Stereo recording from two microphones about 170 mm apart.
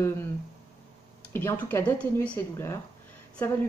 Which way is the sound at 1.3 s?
15° left (ahead or behind).